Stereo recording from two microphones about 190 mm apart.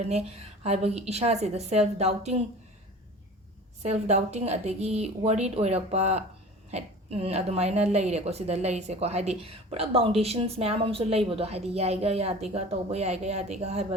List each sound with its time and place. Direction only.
0.0 s a woman's voice: 35° right (ahead or behind)
3.8 s a woman's voice: 35° right (ahead or behind)